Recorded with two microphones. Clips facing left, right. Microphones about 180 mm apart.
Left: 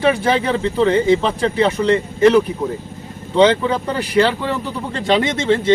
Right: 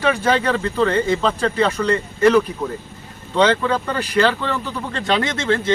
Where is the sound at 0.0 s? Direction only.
20° left (ahead or behind).